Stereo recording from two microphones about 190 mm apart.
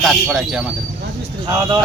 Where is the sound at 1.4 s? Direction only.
20° right (ahead or behind).